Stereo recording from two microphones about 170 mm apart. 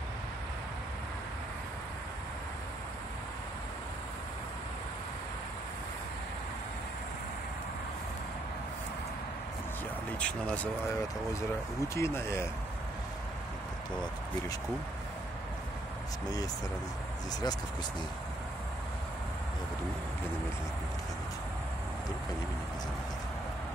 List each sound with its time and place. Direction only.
10.1 s speech: 5° left (ahead or behind)
11.9 s speech: 15° left (ahead or behind)
17.3 s speech: 25° left (ahead or behind)